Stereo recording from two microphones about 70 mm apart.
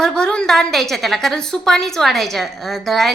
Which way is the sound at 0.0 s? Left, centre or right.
Centre.